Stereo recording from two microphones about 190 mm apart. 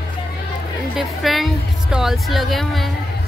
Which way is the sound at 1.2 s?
Centre (ahead or behind).